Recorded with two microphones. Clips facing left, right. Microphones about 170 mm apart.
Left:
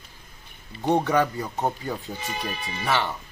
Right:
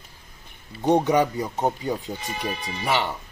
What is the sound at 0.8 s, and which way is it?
Speech, 20° right (ahead or behind).